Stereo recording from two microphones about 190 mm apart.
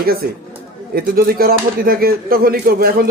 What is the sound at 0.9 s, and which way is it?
Speech, 50° right (ahead or behind).